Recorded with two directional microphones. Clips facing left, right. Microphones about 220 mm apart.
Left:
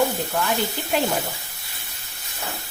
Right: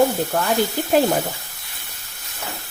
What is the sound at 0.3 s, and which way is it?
Speech, 45° right (ahead or behind).